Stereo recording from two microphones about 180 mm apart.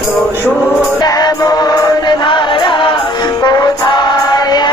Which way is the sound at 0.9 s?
20° left (ahead or behind).